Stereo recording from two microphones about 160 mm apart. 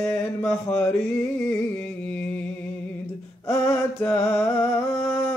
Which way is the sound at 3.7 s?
10° left (ahead or behind).